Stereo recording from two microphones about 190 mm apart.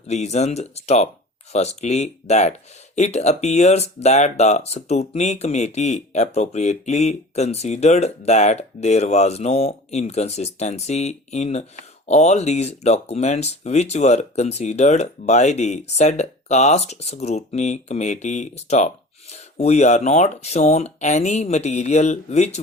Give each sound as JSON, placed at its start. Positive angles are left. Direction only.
{"t": 0.1, "sound": "speech", "side_deg": 35}